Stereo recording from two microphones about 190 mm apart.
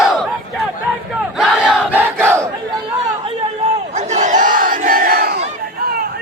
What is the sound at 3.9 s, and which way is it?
Battle cry, 40° right (ahead or behind).